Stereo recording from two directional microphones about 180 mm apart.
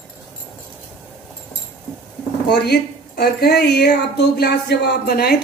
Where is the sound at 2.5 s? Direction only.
60° left (ahead or behind).